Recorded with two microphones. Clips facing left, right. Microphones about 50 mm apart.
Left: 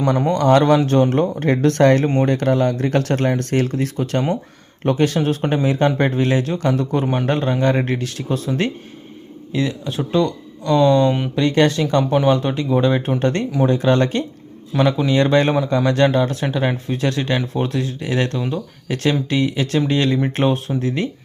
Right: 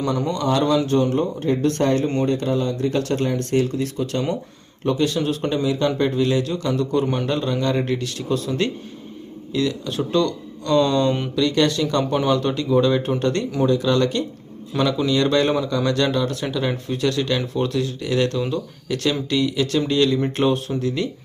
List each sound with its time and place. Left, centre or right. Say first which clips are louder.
0.0 s a man's voice: left 5 dB; left
0.4 s speech: left 6 dB; left
0.8 s speech: left 3 dB; left
2.2 s speech: left 4 dB; left
4.8 s a man's voice: left 3 dB; left
7.0 s speech: left 2 dB; left
7.3 s a man's voice: left 4 dB; left
8.3 s speech: left 1 dB; left; by 11.3 s centre
11.3 s a man's voice: left 3 dB; left